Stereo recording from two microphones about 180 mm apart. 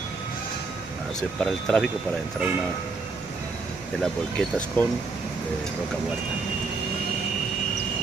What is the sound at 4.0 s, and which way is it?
Speech, 5° left (ahead or behind).